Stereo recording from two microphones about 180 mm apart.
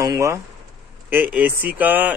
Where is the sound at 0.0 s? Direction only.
15° right (ahead or behind).